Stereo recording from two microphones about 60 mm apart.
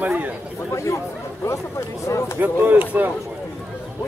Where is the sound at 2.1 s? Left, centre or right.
Left.